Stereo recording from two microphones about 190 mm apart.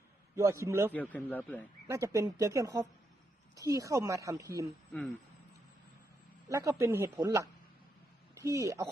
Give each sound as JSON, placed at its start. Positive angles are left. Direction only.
{"t": 0.3, "sound": "speech", "side_deg": -15}
{"t": 0.9, "sound": "a man's voice", "side_deg": 10}
{"t": 1.9, "sound": "speech", "side_deg": -15}
{"t": 6.5, "sound": "speech", "side_deg": -15}